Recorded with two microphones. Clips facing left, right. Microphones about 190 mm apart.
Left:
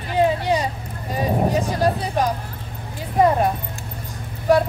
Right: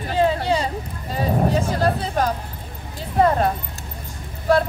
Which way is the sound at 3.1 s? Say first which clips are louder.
Left 1 dB; 15° left (ahead or behind).